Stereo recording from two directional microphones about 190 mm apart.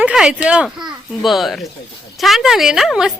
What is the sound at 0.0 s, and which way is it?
Speech, 5° right (ahead or behind).